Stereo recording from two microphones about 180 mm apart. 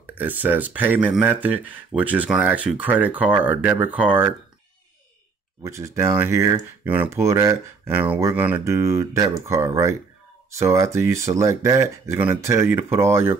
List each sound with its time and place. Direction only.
0.0 s speech: 10° right (ahead or behind)
5.6 s speech: 15° right (ahead or behind)